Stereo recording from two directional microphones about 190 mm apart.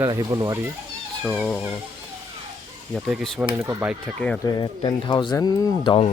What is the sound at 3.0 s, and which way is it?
Speech, centre (ahead or behind).